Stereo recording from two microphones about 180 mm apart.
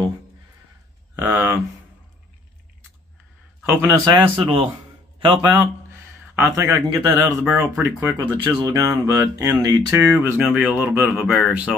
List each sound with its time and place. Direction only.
1.1 s speech: 10° right (ahead or behind)
3.6 s speech: 20° right (ahead or behind)
6.5 s speech: 15° right (ahead or behind)